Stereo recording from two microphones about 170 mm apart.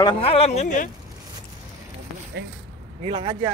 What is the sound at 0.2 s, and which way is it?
Speech, 35° left (ahead or behind).